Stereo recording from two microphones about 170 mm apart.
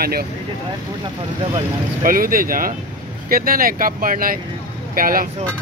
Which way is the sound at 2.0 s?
55° right (ahead or behind).